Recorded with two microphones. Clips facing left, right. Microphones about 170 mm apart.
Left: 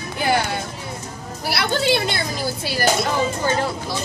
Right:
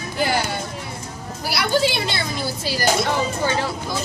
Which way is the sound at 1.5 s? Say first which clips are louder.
Even; 60° left (ahead or behind).